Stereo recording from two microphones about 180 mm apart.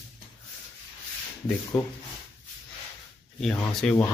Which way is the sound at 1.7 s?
5° left (ahead or behind).